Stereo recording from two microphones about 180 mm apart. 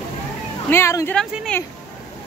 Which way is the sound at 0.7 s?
15° left (ahead or behind).